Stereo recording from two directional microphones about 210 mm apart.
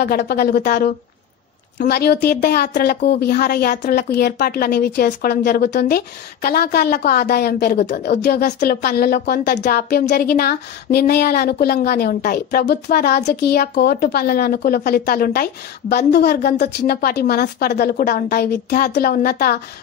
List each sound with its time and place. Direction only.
0.0 s a woman's voice: 50° left (ahead or behind)